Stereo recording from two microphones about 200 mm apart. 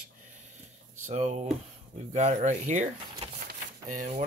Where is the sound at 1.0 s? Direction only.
35° right (ahead or behind).